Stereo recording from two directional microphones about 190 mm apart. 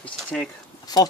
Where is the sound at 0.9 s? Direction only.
20° left (ahead or behind).